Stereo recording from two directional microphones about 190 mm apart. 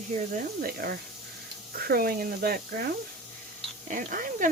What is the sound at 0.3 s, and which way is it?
Speech, 50° right (ahead or behind).